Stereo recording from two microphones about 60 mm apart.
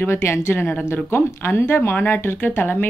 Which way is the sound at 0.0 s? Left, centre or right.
Left.